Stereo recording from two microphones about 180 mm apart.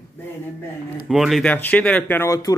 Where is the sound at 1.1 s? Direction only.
Centre (ahead or behind); by 2.6 s 20° left (ahead or behind).